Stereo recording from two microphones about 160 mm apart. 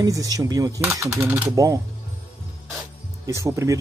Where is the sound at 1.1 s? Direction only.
10° right (ahead or behind).